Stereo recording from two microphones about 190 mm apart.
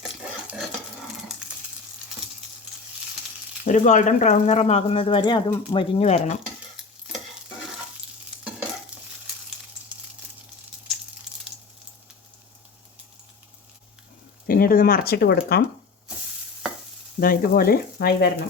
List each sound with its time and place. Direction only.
0.0 s a sound: 5° right (ahead or behind)
3.6 s speech: 40° left (ahead or behind)
8.9 s stir: 5° right (ahead or behind)
14.4 s speech: 50° left (ahead or behind)
17.2 s speech: 50° left (ahead or behind)